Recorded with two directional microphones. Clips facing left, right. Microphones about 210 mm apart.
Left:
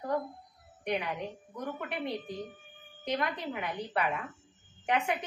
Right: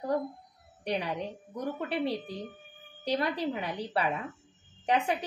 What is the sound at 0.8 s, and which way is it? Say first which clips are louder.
A woman's voice: right 1 dB; 30° right (ahead or behind).